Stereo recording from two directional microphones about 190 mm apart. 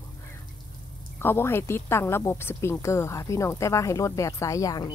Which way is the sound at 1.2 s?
10° left (ahead or behind).